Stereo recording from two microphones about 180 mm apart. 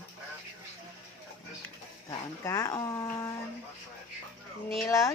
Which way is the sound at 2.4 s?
15° left (ahead or behind).